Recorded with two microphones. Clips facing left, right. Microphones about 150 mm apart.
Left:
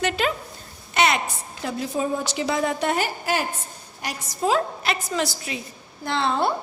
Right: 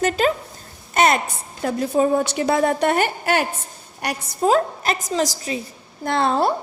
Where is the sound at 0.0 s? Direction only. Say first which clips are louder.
Right 5 dB; 40° right (ahead or behind); by 4.3 s 60° right (ahead or behind).